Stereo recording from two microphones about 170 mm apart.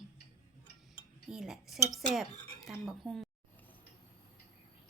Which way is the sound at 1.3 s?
Centre (ahead or behind).